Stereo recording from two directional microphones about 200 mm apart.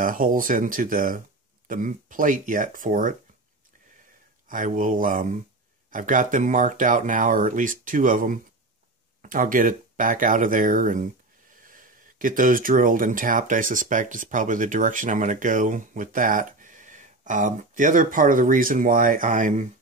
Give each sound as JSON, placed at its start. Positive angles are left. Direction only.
{"t": 0.0, "sound": "speech", "side_deg": -45}
{"t": 4.5, "sound": "speech", "side_deg": -40}